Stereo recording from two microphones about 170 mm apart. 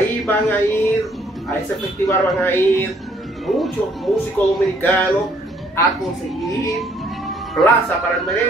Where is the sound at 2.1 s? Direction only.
15° left (ahead or behind).